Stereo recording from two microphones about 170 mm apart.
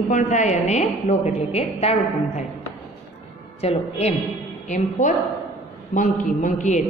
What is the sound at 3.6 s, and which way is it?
A woman's voice, 40° left (ahead or behind).